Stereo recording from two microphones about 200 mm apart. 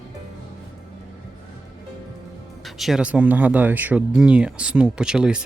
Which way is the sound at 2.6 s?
Centre (ahead or behind).